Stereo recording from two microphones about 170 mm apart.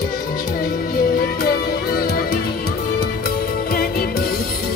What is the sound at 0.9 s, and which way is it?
Music, 55° left (ahead or behind).